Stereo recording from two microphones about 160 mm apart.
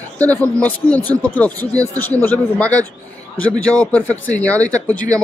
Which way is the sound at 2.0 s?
10° left (ahead or behind).